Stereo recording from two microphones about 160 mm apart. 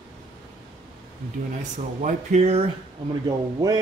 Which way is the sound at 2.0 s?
45° right (ahead or behind).